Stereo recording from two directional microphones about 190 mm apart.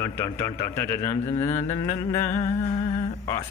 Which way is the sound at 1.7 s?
30° left (ahead or behind).